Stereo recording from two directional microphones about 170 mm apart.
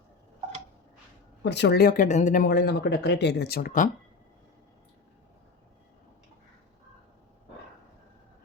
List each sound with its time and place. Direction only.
1.4 s speech: 85° left; by 2.5 s 45° left (ahead or behind)
2.5 s speech: 75° left (ahead or behind); by 3.8 s 55° left (ahead or behind)